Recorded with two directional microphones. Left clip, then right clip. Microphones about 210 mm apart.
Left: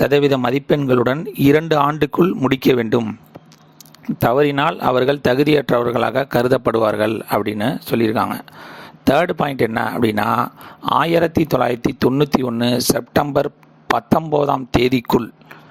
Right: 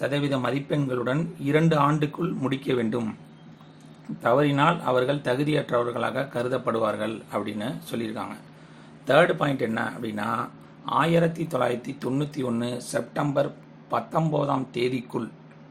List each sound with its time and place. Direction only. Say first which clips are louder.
0.0 s speech: left 11 dB; 55° left (ahead or behind)
4.2 s speech: left 6 dB; 50° left (ahead or behind)